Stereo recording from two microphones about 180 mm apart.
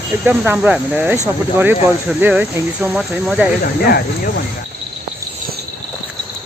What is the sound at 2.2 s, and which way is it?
Cricket, 5° right (ahead or behind).